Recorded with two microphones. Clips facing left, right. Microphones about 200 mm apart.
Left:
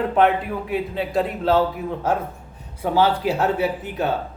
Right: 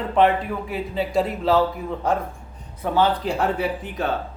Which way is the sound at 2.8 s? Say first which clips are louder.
Left 2 dB; 5° left (ahead or behind).